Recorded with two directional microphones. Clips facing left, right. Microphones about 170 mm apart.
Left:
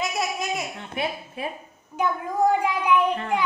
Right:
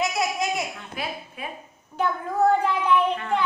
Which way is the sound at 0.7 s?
25° left (ahead or behind).